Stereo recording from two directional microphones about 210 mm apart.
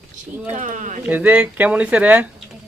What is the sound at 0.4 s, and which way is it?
Speech, 35° right (ahead or behind).